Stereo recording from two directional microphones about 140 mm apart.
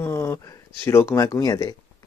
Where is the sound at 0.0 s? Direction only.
20° left (ahead or behind).